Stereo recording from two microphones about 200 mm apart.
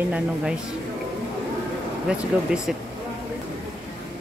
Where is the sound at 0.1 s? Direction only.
5° right (ahead or behind).